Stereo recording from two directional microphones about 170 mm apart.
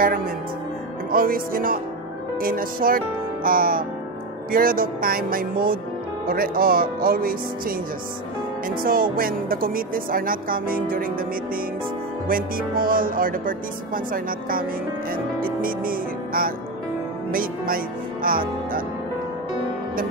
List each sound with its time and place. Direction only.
1.1 s speech: 55° right (ahead or behind)
12.3 s speech: 55° right (ahead or behind)